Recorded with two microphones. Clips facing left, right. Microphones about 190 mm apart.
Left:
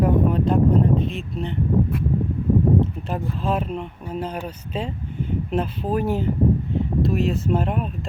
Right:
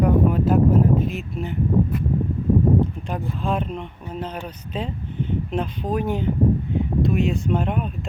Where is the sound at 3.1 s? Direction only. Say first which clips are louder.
Left 3 dB; 5° left (ahead or behind).